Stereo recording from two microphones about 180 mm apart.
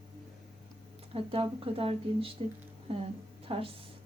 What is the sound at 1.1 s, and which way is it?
Speech, 30° right (ahead or behind).